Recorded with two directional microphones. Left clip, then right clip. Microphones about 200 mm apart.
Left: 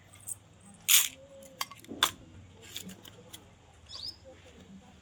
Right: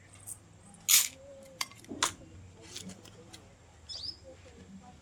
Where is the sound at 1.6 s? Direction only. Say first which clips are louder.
Left 3 dB; 5° left (ahead or behind).